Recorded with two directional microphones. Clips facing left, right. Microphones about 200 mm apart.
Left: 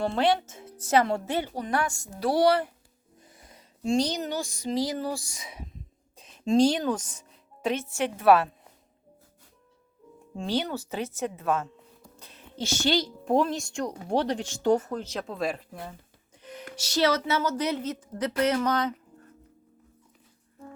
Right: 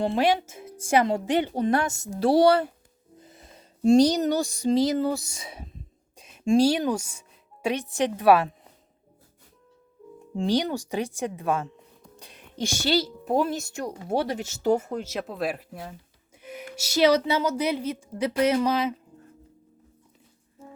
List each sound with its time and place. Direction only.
0.0 s a woman's voice: 15° right (ahead or behind)
3.2 s music: 25° right (ahead or behind)
3.8 s speech: 40° right (ahead or behind)
6.1 s speech: 10° right (ahead or behind)
10.3 s a woman's voice: 15° right (ahead or behind)
12.1 s a sound: 15° right (ahead or behind)
12.5 s a woman's voice: 10° right (ahead or behind)